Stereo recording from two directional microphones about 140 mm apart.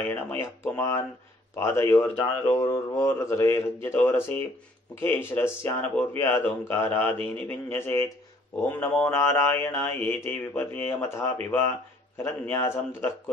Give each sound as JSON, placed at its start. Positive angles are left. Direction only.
{"t": 0.0, "sound": "speech", "side_deg": 20}